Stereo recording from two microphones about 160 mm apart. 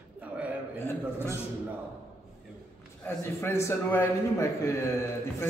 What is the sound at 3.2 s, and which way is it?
A man's voice, 15° left (ahead or behind).